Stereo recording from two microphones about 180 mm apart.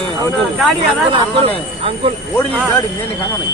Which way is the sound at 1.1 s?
30° right (ahead or behind).